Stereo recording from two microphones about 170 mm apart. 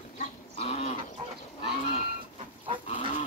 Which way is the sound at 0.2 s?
35° left (ahead or behind).